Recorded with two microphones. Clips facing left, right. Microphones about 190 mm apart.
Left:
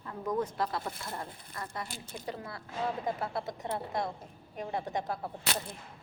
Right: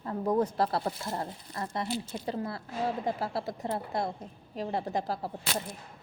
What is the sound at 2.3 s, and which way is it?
Speech, 35° right (ahead or behind).